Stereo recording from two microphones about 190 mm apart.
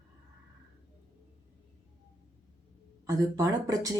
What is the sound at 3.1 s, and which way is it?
Speech, 20° right (ahead or behind).